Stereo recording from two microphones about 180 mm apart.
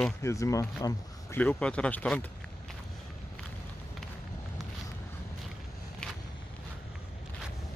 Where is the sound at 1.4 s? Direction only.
5° left (ahead or behind).